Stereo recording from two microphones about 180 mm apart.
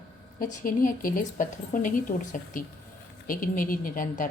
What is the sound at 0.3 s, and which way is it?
A woman's voice, 50° left (ahead or behind).